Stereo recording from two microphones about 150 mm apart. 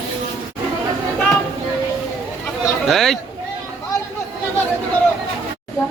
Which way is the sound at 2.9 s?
Centre (ahead or behind).